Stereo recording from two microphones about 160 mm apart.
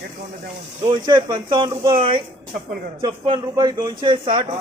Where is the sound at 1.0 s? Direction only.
30° right (ahead or behind).